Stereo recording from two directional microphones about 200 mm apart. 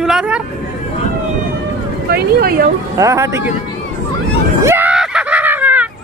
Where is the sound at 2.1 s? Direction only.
50° right (ahead or behind).